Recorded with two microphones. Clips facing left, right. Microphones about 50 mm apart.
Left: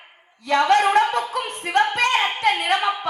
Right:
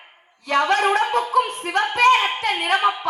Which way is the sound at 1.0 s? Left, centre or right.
Left.